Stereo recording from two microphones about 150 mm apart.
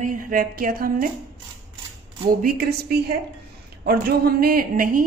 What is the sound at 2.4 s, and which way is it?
A woman's voice, 90° right.